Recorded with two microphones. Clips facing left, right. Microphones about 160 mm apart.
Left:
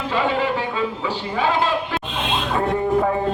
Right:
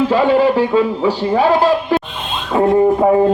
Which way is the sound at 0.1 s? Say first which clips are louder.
Right 9 dB; 40° right (ahead or behind).